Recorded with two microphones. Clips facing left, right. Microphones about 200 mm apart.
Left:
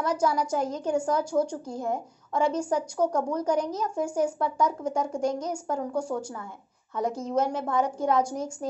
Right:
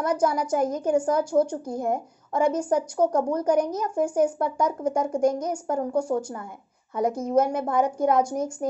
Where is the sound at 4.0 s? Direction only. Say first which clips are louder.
Right 5 dB; 60° right (ahead or behind).